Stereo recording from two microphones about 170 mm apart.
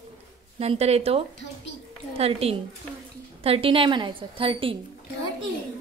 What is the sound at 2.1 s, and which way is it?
A woman's voice, 35° right (ahead or behind).